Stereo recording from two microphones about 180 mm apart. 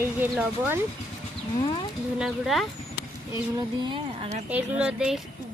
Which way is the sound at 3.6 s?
25° right (ahead or behind).